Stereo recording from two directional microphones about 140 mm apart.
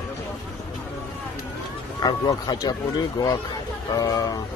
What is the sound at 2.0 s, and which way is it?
Speech, 30° left (ahead or behind).